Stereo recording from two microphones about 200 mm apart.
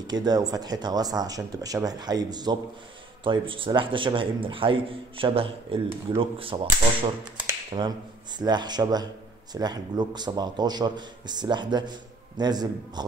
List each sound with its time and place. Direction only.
0.0 s speech: 20° right (ahead or behind)